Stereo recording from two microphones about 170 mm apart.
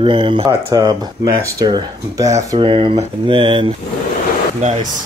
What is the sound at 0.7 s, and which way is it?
Speech, 20° right (ahead or behind).